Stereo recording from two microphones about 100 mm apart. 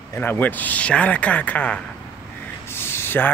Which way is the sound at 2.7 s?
25° left (ahead or behind).